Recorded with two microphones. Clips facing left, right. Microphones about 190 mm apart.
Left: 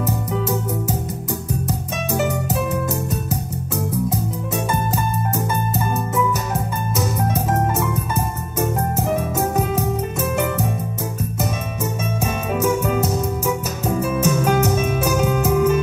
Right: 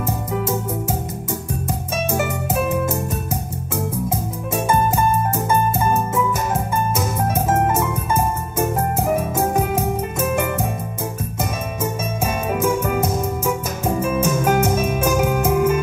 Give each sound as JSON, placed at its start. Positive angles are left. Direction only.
{"t": 5.5, "sound": "music", "side_deg": -20}
{"t": 13.8, "sound": "music", "side_deg": -15}